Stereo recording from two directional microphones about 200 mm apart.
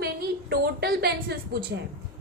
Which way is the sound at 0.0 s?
50° right (ahead or behind).